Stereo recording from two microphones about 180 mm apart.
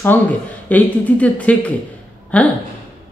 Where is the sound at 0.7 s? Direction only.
10° left (ahead or behind).